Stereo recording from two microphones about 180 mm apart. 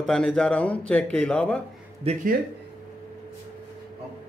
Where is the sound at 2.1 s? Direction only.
35° right (ahead or behind).